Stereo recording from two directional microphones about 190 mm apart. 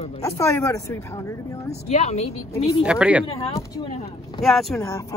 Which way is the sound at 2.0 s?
35° left (ahead or behind).